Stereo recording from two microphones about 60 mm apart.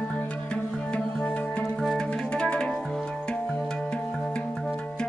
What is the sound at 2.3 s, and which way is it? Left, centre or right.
Organ, centre.